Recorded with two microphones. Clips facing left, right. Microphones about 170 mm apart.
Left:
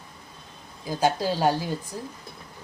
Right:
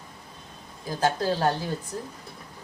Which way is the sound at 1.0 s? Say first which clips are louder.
Left 1 dB; 10° left (ahead or behind).